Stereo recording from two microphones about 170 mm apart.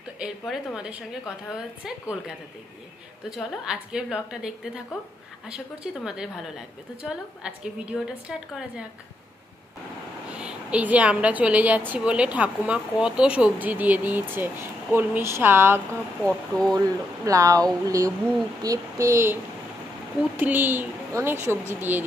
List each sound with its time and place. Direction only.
0.2 s a woman's voice: 5° right (ahead or behind)
10.3 s speech: 5° right (ahead or behind)
16.2 s a woman's voice: 5° left (ahead or behind)
16.7 s speech: 20° right (ahead or behind)